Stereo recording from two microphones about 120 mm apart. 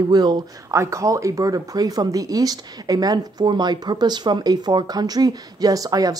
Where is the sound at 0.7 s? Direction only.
25° right (ahead or behind).